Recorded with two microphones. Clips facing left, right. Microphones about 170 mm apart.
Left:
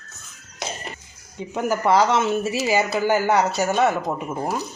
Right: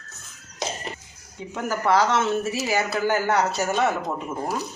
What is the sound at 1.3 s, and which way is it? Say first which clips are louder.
Speech: left 4 dB; 20° left (ahead or behind).